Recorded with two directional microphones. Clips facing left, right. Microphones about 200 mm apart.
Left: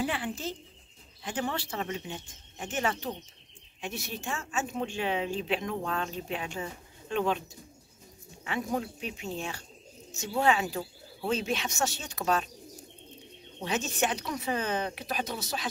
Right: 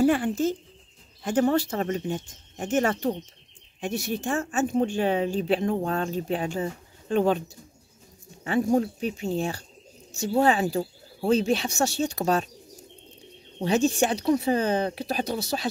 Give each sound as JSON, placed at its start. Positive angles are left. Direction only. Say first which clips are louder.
{"t": 0.0, "sound": "speech", "louder": "right 11 dB", "side_deg": -45}
{"t": 8.5, "sound": "speech", "louder": "right 9 dB", "side_deg": -35}
{"t": 13.6, "sound": "speech", "louder": "right 8 dB", "side_deg": -35}